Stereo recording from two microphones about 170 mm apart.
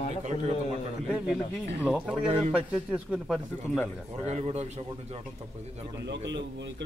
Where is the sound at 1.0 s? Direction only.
5° right (ahead or behind).